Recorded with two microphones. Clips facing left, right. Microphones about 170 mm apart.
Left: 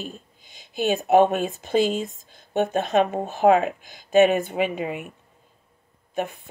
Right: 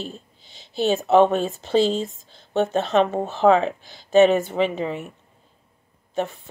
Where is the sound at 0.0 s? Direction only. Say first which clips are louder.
Right 2 dB; 15° left (ahead or behind).